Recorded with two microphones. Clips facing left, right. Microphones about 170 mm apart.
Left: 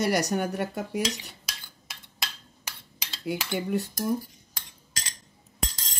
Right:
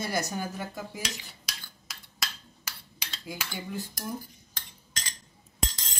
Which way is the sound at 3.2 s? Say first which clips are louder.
Left 9 dB; 65° left (ahead or behind).